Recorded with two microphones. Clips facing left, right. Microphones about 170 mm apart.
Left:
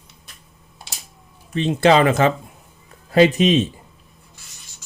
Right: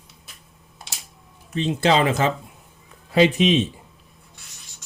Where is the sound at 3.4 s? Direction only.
45° left (ahead or behind).